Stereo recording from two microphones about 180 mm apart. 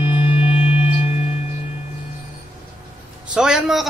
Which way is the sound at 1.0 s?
35° left (ahead or behind).